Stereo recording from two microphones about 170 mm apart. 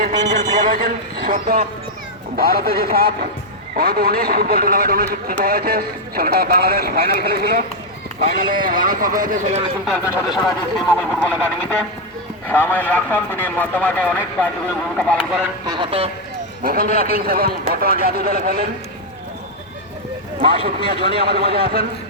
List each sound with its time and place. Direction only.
0.3 s a sound: 45° right (ahead or behind)
1.3 s speech: 50° right (ahead or behind)
2.3 s a man's voice: 60° right (ahead or behind)
8.6 s speech: 55° right (ahead or behind)
9.8 s a man's voice: centre (ahead or behind)
15.6 s speech: 25° right (ahead or behind)
16.6 s a man's voice: 60° right (ahead or behind)
20.4 s speech: 35° right (ahead or behind)
21.2 s a man's voice: 70° right (ahead or behind)